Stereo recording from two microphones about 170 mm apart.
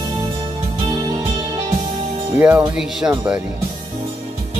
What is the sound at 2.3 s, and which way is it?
Speech, 10° right (ahead or behind).